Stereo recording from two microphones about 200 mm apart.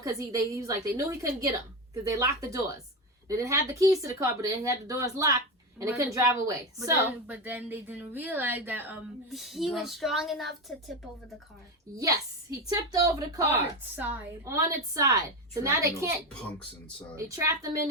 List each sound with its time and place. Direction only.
0.0 s a woman's voice: 15° right (ahead or behind); by 11.3 s centre (ahead or behind)
12.6 s a woman's voice: 15° right (ahead or behind)
17.3 s a woman's voice: 15° right (ahead or behind)